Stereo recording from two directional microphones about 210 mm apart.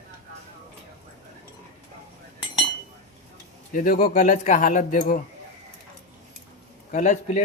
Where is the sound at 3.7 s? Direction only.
40° left (ahead or behind).